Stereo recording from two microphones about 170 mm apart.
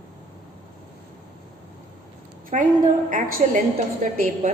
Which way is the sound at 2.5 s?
50° right (ahead or behind).